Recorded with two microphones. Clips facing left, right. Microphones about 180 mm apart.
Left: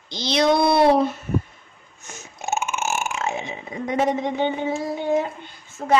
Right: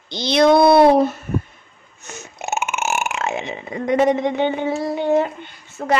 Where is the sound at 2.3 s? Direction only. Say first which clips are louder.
Right 1 dB; 70° right (ahead or behind).